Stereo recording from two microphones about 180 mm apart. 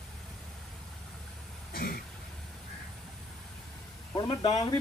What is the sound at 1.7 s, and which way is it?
Throat clearing, 60° left (ahead or behind).